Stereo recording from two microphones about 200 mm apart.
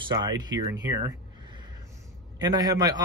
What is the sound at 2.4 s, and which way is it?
Speech, 20° right (ahead or behind).